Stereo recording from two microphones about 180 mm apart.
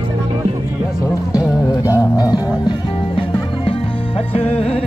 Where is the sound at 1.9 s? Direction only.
20° left (ahead or behind).